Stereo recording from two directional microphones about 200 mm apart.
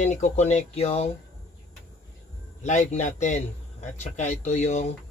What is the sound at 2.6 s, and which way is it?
Speech, 35° left (ahead or behind).